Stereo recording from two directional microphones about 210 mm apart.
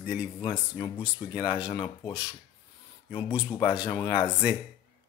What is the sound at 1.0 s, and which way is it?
Speech, 5° right (ahead or behind).